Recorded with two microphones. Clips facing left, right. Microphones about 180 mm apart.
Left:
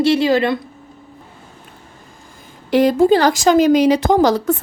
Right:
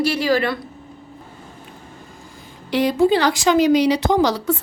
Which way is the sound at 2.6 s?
45° left (ahead or behind).